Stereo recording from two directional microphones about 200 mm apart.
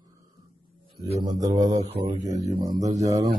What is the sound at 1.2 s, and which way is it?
Mantra, 20° right (ahead or behind).